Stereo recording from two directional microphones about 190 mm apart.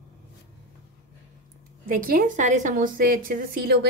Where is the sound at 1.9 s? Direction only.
45° right (ahead or behind).